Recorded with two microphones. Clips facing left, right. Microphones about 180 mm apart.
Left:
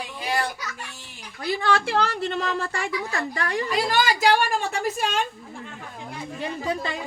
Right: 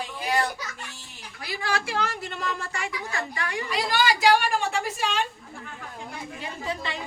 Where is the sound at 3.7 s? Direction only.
45° left (ahead or behind).